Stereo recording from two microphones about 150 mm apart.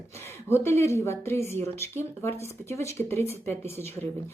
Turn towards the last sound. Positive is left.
turn(degrees=15)  # may be behind; listen again after turning